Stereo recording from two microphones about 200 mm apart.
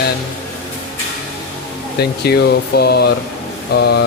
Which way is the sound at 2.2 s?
55° left (ahead or behind).